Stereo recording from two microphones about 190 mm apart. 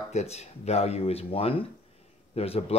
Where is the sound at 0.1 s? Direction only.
35° left (ahead or behind).